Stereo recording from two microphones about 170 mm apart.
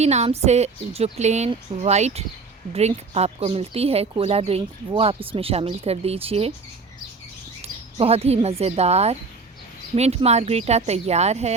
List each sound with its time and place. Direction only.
0.0 s speech: 40° right (ahead or behind)
7.9 s speech: 35° right (ahead or behind)